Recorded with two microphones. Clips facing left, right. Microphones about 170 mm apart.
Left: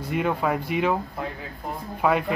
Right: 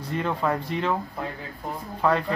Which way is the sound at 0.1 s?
10° left (ahead or behind).